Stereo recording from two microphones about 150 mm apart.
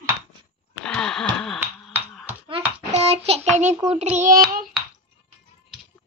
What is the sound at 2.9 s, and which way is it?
Child singing, 45° right (ahead or behind).